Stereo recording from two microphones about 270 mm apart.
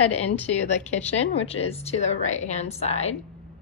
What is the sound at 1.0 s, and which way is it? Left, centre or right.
A woman's voice, left.